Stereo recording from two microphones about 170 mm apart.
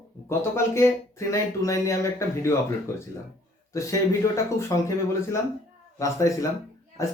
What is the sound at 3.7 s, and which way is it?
Speech, 20° left (ahead or behind).